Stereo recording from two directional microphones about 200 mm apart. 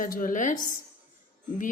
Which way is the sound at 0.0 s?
45° left (ahead or behind).